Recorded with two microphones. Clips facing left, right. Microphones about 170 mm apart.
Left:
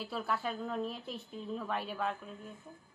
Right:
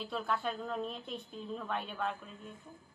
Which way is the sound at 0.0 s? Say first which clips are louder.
Even; 5° left (ahead or behind).